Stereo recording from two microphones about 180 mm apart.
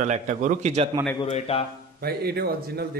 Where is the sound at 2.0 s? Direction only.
60° right (ahead or behind).